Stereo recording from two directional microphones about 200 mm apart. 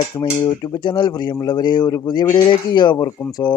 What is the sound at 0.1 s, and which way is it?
Speech, 15° left (ahead or behind).